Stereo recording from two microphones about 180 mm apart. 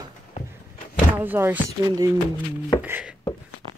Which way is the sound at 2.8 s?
10° right (ahead or behind).